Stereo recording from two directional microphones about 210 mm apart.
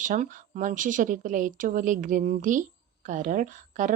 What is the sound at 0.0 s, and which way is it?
Speech, 40° right (ahead or behind).